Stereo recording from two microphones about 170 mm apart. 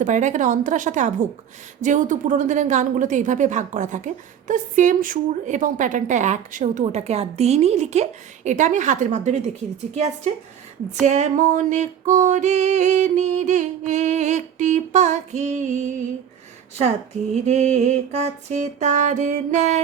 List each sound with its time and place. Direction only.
0.0 s a woman's voice: 45° right (ahead or behind)
11.0 s a woman's voice: 45° right (ahead or behind)
17.4 s a woman's voice: 40° right (ahead or behind)